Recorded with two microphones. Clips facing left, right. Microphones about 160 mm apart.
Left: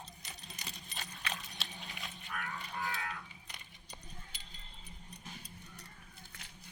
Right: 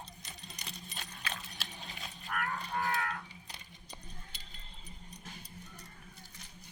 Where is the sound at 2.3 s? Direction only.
60° right (ahead or behind).